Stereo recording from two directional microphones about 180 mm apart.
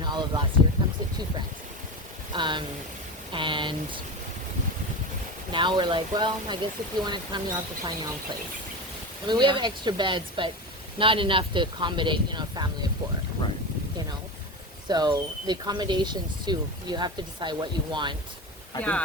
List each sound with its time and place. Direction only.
0.0 s a sound: 25° right (ahead or behind)
2.3 s speech: 25° right (ahead or behind)
3.3 s a sound: 25° right (ahead or behind)
5.5 s speech: 25° right (ahead or behind)
9.2 s speech: 25° right (ahead or behind)
14.8 s speech: 25° right (ahead or behind)
18.8 s speech: 5° left (ahead or behind)